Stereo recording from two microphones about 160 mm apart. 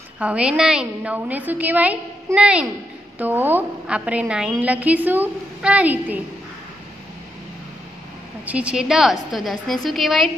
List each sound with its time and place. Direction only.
0.2 s a woman's voice: 5° right (ahead or behind)
8.5 s a woman's voice: 5° right (ahead or behind)